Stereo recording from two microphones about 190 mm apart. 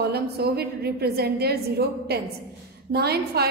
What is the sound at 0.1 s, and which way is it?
A woman's voice, 55° right (ahead or behind).